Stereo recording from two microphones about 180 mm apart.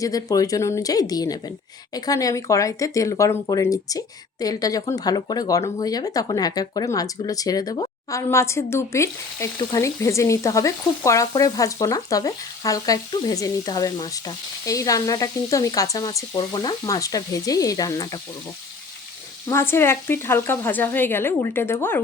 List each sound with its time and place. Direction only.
0.0 s speech: 20° left (ahead or behind)
19.5 s speech: 15° left (ahead or behind)